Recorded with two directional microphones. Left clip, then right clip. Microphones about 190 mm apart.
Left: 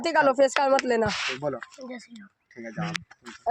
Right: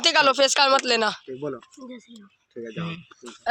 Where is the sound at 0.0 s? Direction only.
20° left (ahead or behind).